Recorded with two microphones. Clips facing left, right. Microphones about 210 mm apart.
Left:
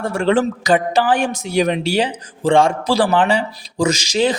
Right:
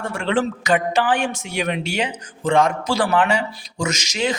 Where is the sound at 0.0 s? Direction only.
40° left (ahead or behind).